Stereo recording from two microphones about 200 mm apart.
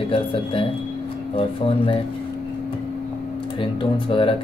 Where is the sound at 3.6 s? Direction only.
25° left (ahead or behind).